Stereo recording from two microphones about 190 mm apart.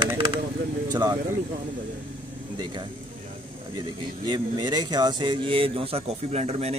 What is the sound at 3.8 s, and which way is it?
Speech, 20° right (ahead or behind).